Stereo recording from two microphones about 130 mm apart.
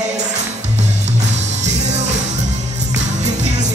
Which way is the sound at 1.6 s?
60° right (ahead or behind).